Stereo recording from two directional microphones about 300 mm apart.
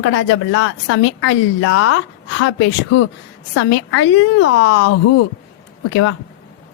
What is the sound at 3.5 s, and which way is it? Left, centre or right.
A woman's voice, left.